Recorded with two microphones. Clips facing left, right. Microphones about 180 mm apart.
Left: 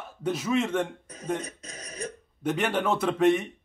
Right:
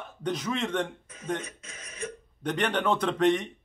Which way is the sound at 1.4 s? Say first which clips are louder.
Left 3 dB; 40° left (ahead or behind).